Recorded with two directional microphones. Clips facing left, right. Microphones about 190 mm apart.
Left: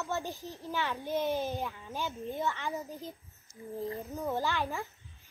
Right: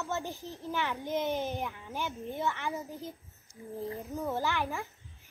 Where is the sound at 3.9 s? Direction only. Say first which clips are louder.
Right 2 dB; 15° left (ahead or behind).